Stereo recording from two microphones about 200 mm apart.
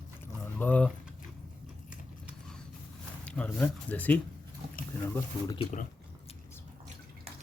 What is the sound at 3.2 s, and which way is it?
Speech, 5° left (ahead or behind).